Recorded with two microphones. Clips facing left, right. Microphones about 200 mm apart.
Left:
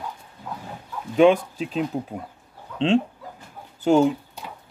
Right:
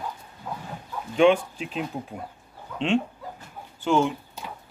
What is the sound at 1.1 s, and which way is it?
Speech, 40° left (ahead or behind).